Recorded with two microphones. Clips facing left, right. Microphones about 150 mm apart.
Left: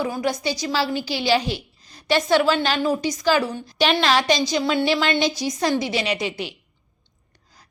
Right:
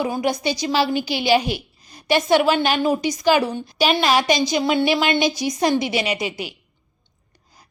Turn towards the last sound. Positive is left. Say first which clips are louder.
# even
turn(degrees=-10)  # may be behind; listen again after turning